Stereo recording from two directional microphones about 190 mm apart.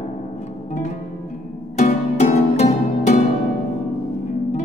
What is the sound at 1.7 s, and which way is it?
Music, 40° left (ahead or behind).